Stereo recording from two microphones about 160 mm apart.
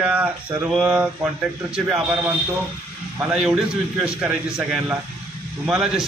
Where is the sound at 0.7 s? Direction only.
5° right (ahead or behind).